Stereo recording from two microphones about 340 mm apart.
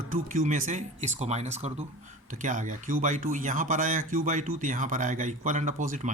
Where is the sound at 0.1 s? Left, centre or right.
Right.